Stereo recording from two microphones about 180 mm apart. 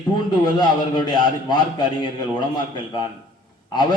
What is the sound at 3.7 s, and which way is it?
Speech, 25° left (ahead or behind).